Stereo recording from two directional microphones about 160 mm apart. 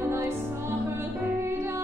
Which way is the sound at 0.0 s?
15° right (ahead or behind).